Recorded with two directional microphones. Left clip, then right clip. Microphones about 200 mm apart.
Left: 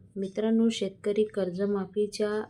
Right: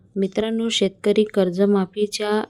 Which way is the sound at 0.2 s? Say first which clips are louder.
Right 5 dB; 40° right (ahead or behind).